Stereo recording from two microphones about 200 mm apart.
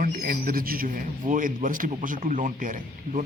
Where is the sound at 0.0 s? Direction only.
45° right (ahead or behind).